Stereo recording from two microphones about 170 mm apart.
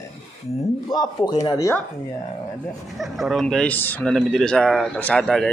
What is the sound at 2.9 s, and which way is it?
Speech, centre (ahead or behind).